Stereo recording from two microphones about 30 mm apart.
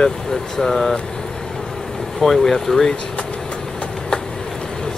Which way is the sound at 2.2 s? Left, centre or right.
Centre.